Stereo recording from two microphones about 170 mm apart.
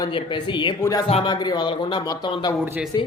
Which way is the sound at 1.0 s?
30° left (ahead or behind).